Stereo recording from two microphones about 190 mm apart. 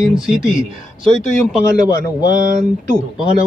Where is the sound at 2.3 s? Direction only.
45° right (ahead or behind).